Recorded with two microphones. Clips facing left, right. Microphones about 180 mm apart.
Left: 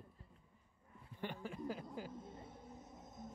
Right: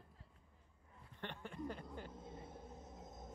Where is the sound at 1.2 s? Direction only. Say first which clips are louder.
Left 2 dB; 5° left (ahead or behind).